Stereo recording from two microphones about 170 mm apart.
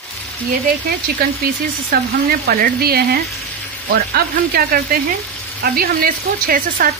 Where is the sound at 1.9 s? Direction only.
60° right (ahead or behind).